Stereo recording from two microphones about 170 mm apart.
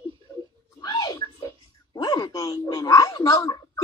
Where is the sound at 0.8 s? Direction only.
25° left (ahead or behind).